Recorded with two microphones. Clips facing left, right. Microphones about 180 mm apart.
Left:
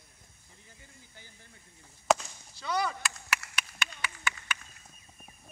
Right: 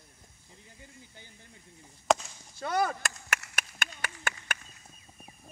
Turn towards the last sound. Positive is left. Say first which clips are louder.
# even
turn(degrees=-50)  # may be behind; listen again after turning